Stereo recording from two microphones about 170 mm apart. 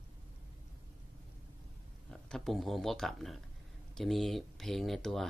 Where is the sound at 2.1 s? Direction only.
Centre (ahead or behind).